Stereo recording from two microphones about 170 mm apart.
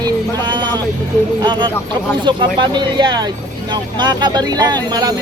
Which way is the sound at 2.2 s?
30° right (ahead or behind).